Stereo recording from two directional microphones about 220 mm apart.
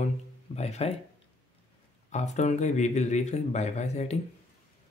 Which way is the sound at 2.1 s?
30° left (ahead or behind).